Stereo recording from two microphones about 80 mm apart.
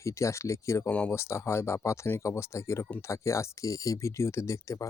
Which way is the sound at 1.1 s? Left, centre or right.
Left.